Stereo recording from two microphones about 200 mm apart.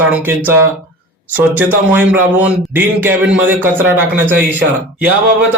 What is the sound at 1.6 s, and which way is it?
A man's voice, 10° right (ahead or behind).